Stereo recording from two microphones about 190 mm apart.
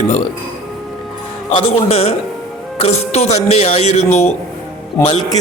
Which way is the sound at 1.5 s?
30° left (ahead or behind).